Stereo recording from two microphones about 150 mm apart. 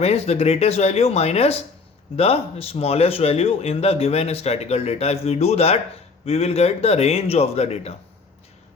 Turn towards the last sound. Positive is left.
turn(degrees=45)  # may be behind; listen again after turning